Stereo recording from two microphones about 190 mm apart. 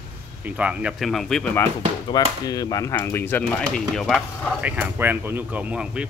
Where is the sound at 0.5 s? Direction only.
5° right (ahead or behind).